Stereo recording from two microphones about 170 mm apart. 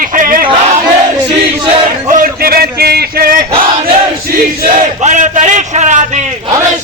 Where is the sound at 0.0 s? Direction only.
55° right (ahead or behind).